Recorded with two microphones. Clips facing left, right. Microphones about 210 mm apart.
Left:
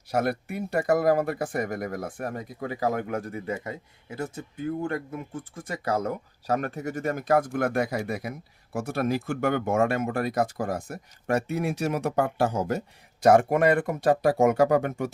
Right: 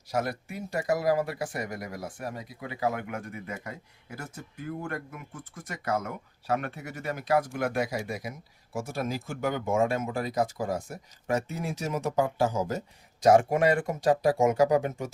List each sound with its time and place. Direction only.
0.1 s speech: 60° left (ahead or behind)